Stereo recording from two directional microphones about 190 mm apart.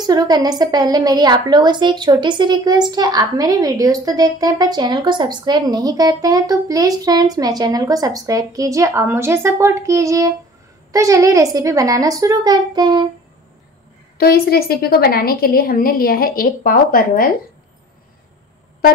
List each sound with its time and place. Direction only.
0.0 s a woman's voice: 20° right (ahead or behind)
14.1 s a woman's voice: 55° left (ahead or behind)